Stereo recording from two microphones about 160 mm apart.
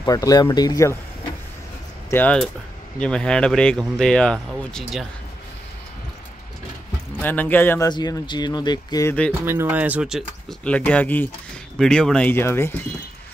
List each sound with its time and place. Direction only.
0.0 s speech: 20° left (ahead or behind)
2.0 s speech: 10° left (ahead or behind)
7.2 s speech: 10° left (ahead or behind)
7.9 s speech: 25° left (ahead or behind)
9.4 s speech: 15° right (ahead or behind)
10.6 s speech: 10° left (ahead or behind)